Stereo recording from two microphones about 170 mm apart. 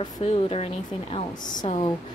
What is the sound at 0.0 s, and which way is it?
Speech, 35° left (ahead or behind).